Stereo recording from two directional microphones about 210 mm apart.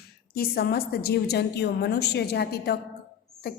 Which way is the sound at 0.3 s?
45° left (ahead or behind).